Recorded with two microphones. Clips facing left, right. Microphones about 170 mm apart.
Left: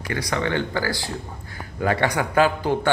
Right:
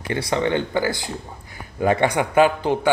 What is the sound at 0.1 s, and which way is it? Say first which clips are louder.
A man's voice: right 3 dB; 25° right (ahead or behind).